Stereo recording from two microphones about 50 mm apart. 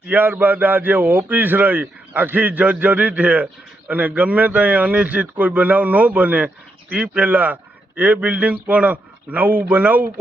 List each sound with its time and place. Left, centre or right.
0.1 s a man's voice: right